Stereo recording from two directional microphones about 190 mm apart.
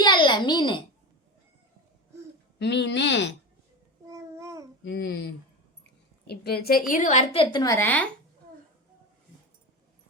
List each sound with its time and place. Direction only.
0.0 s a sound: 25° left (ahead or behind)
2.6 s speech: 65° left (ahead or behind)
4.1 s babbling: 15° right (ahead or behind)
4.8 s speech: 70° left (ahead or behind)
6.2 s a woman's voice: 55° left (ahead or behind)
7.3 s a woman's voice: 20° left (ahead or behind)